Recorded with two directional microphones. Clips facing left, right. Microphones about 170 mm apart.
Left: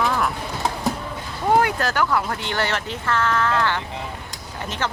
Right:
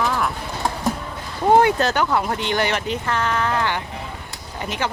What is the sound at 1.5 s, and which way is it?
Speech, 25° right (ahead or behind).